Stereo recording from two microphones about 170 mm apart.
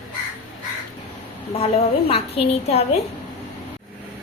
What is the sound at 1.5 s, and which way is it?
A woman's voice, 35° left (ahead or behind).